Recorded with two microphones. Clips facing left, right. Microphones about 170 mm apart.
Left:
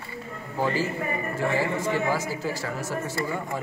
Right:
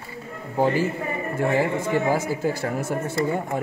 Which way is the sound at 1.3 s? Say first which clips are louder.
Right 5 dB; 50° right (ahead or behind).